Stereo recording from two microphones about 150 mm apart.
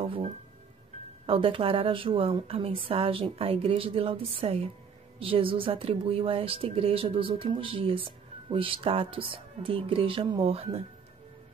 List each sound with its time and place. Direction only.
0.0 s speech: 40° right (ahead or behind)